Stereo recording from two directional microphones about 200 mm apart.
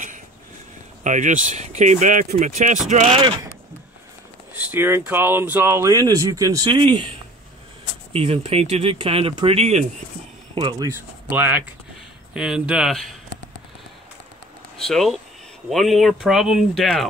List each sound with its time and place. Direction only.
1.0 s speech: 40° right (ahead or behind)
4.6 s speech: 10° right (ahead or behind)
8.1 s speech: 30° right (ahead or behind)
10.5 s speech: 20° right (ahead or behind); by 13.1 s centre (ahead or behind)
14.8 s speech: centre (ahead or behind)